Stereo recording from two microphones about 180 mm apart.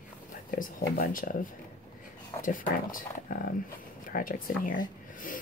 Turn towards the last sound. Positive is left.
turn(degrees=50)  # may be behind; listen again after turning